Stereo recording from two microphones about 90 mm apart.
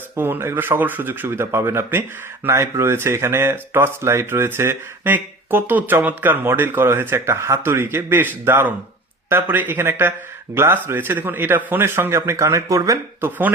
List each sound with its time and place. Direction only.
0.2 s speech: 25° right (ahead or behind)